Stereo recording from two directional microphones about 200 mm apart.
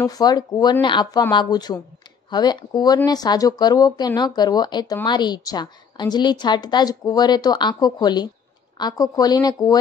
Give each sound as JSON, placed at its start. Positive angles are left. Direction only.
{"t": 0.0, "sound": "a woman's voice", "side_deg": 20}